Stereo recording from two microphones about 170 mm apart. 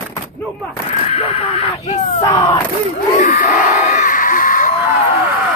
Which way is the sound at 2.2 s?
20° left (ahead or behind).